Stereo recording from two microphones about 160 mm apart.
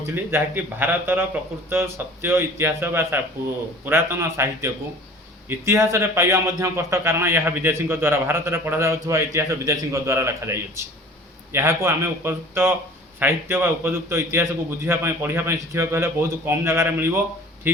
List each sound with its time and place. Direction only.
0.0 s a man's voice: 15° right (ahead or behind)